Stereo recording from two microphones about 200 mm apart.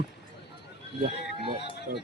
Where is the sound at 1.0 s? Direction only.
25° right (ahead or behind).